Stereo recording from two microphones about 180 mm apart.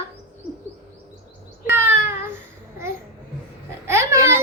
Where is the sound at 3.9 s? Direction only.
15° right (ahead or behind).